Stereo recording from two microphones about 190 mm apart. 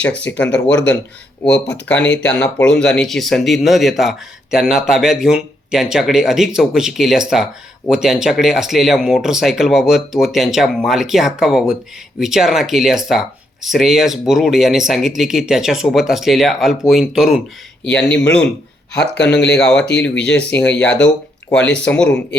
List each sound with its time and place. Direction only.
0.0 s speech: 5° left (ahead or behind)
0.5 s speech: 70° left (ahead or behind)
2.4 s speech: 5° left (ahead or behind)
17.8 s speech: 65° left (ahead or behind)
21.5 s speech: 5° left (ahead or behind)